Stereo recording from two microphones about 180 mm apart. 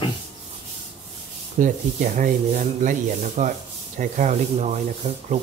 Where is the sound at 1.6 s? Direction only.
45° right (ahead or behind).